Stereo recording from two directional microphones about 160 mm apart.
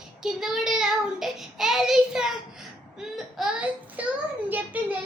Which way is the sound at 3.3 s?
5° right (ahead or behind).